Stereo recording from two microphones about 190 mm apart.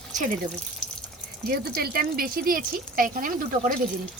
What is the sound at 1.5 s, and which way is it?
Speech, 55° right (ahead or behind).